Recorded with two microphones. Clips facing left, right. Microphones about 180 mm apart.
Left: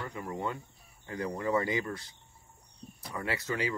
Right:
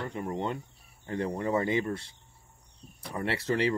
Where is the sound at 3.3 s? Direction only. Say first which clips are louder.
Right 5 dB; 30° right (ahead or behind).